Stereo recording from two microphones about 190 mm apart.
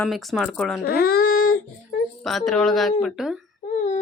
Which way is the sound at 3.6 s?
40° left (ahead or behind).